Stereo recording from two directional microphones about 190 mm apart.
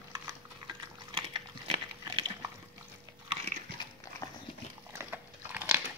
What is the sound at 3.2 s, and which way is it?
Dog, 35° right (ahead or behind).